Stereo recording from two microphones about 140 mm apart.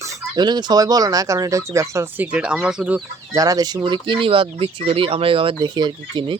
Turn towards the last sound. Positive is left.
turn(degrees=-35)  # may be behind; listen again after turning